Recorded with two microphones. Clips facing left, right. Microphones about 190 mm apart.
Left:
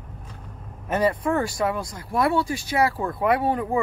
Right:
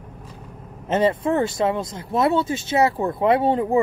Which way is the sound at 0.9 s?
25° right (ahead or behind).